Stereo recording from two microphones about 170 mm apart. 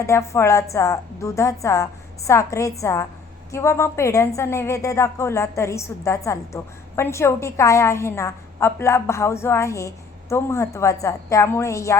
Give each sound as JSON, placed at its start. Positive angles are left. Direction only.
{"t": 0.0, "sound": "a woman's voice", "side_deg": 15}